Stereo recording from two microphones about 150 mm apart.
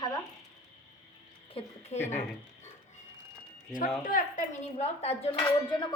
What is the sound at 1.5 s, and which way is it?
Speech, 45° left (ahead or behind).